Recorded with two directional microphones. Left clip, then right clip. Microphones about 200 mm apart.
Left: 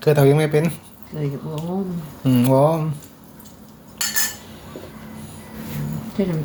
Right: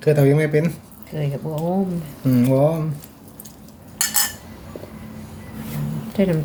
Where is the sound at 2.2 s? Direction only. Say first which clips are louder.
Left 1 dB; centre (ahead or behind).